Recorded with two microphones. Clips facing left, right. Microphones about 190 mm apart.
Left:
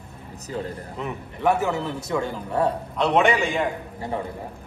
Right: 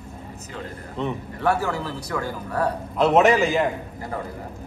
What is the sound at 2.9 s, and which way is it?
Speech, centre (ahead or behind).